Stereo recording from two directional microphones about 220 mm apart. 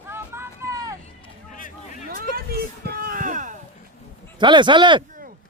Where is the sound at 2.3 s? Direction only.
45° right (ahead or behind).